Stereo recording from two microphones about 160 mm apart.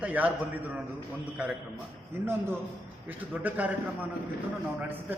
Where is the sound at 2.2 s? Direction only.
15° right (ahead or behind).